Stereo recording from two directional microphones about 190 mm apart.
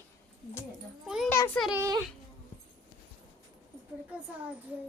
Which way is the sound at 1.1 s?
Centre (ahead or behind).